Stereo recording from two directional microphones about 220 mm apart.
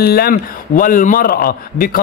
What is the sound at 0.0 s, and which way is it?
A man's voice, 45° left (ahead or behind).